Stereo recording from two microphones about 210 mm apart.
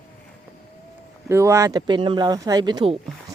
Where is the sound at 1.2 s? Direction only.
15° right (ahead or behind).